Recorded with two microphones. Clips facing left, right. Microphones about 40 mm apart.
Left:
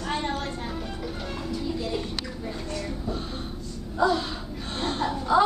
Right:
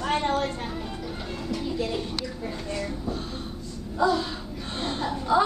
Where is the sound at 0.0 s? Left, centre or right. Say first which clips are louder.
Right 4 dB; right.